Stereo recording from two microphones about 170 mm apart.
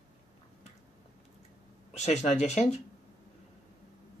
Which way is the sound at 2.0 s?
40° left (ahead or behind).